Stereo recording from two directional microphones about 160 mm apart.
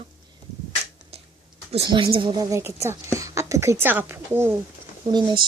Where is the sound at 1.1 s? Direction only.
40° right (ahead or behind).